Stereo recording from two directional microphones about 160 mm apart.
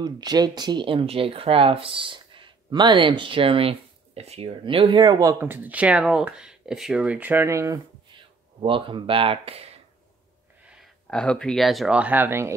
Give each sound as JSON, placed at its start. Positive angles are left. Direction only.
{"t": 0.0, "sound": "speech", "side_deg": -25}
{"t": 8.1, "sound": "speech", "side_deg": -30}
{"t": 10.7, "sound": "speech", "side_deg": 0}